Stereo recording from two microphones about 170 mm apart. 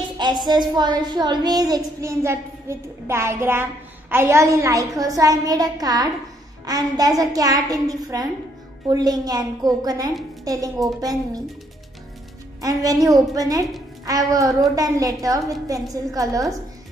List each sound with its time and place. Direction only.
0.5 s a child's voice: 25° right (ahead or behind)
12.6 s a child's voice: 20° right (ahead or behind)